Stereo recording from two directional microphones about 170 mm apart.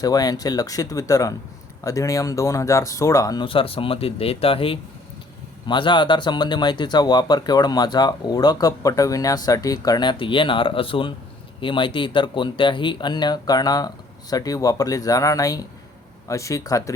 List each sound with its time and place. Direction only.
0.0 s speech: 20° left (ahead or behind)